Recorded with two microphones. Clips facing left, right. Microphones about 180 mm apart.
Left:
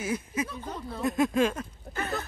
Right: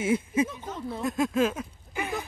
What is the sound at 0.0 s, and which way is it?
Speech, 25° right (ahead or behind).